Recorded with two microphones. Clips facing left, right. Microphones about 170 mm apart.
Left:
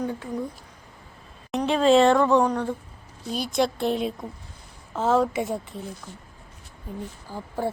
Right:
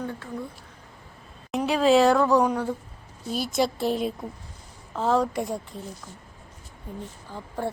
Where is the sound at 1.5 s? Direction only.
5° right (ahead or behind).